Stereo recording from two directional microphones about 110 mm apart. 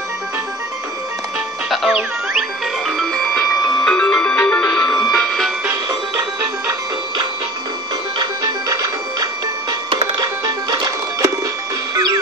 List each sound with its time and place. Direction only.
1.7 s music: centre (ahead or behind)
10.2 s music: 35° right (ahead or behind)
11.9 s a sound: 35° right (ahead or behind)